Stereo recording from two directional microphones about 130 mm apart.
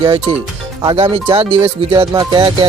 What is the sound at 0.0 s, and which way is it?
Speech, 45° right (ahead or behind).